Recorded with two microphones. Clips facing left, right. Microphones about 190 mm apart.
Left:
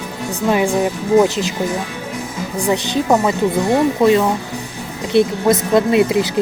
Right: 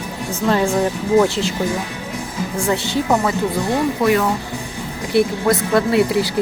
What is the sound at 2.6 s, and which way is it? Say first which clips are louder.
Speech: left 2 dB; 20° left (ahead or behind).